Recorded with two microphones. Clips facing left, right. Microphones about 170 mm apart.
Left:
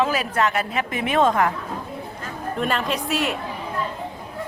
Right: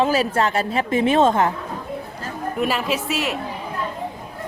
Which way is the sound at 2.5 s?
5° right (ahead or behind).